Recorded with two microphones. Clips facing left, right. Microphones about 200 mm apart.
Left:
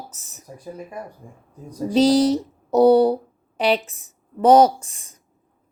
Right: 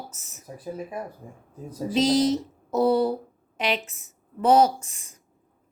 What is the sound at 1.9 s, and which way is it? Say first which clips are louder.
Speech: left 5 dB; 35° left (ahead or behind).